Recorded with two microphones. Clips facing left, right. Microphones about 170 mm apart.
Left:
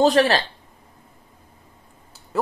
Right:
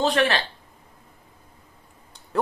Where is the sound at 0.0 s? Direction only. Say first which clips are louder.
Left 5 dB; 40° left (ahead or behind).